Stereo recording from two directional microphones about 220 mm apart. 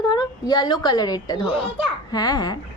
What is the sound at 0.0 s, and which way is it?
A woman's voice, 20° left (ahead or behind).